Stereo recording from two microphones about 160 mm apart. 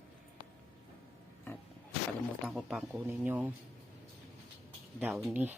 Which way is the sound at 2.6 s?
5° right (ahead or behind).